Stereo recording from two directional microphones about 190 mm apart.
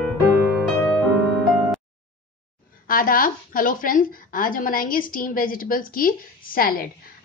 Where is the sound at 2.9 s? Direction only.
50° left (ahead or behind).